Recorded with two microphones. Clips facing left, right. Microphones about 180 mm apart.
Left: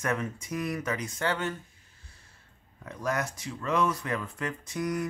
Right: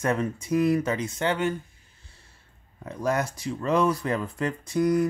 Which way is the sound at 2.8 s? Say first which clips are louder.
Right 5 dB; 30° right (ahead or behind).